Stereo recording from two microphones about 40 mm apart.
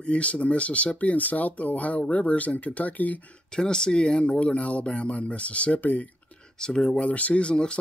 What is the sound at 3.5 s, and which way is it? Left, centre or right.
Speech, left.